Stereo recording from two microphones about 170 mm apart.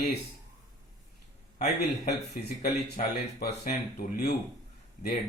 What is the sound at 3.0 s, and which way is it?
Speech, 60° left (ahead or behind).